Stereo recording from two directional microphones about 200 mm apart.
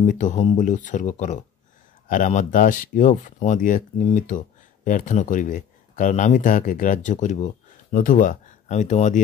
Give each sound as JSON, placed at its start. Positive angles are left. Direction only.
{"t": 0.0, "sound": "speech", "side_deg": 40}